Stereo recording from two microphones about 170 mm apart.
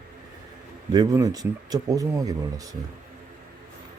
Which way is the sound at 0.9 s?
20° right (ahead or behind).